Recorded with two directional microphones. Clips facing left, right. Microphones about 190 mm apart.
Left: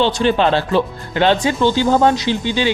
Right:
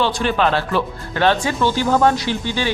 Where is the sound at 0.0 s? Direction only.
25° left (ahead or behind).